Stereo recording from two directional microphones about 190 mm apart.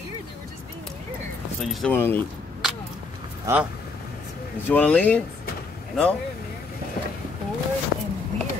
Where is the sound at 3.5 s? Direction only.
15° right (ahead or behind).